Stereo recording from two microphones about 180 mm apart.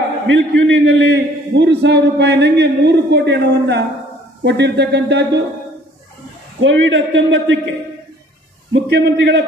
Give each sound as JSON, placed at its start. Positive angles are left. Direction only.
{"t": 0.3, "sound": "a man's voice", "side_deg": -90}
{"t": 6.6, "sound": "a man's voice", "side_deg": -90}
{"t": 8.7, "sound": "a man's voice", "side_deg": -70}